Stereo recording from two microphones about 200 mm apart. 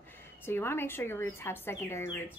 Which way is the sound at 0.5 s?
10° left (ahead or behind).